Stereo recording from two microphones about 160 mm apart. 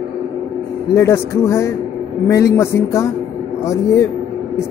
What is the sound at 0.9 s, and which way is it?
A man's voice, 20° left (ahead or behind).